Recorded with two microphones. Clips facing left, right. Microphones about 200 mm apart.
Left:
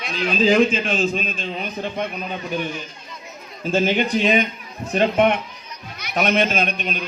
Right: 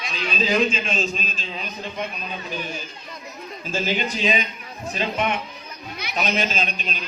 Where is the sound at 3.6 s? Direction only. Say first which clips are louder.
Left 6 dB; 60° left (ahead or behind).